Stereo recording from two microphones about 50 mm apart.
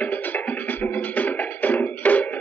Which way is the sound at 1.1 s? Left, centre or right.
Left.